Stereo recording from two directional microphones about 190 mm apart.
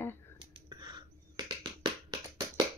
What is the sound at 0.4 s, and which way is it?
Finger snapping, 25° right (ahead or behind).